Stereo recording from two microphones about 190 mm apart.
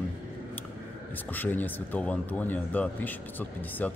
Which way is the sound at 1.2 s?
10° left (ahead or behind).